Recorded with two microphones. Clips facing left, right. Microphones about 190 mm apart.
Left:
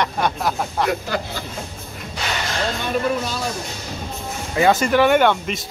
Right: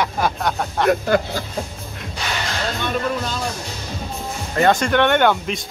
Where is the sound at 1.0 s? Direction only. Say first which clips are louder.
Right 7 dB; 50° right (ahead or behind).